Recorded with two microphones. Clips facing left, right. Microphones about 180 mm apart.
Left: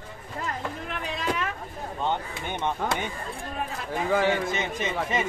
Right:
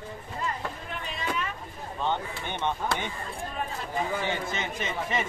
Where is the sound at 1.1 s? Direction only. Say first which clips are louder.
Left 3 dB; 90° left.